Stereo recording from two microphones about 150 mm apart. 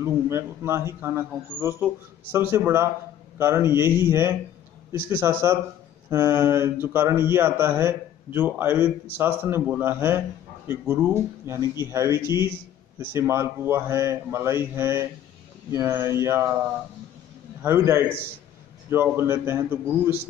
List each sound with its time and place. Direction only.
0.0 s mantra: 20° right (ahead or behind)
5.4 s mantra: 20° right (ahead or behind)
17.6 s mantra: 15° right (ahead or behind)